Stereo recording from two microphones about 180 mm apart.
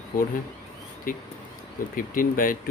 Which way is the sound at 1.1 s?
50° left (ahead or behind).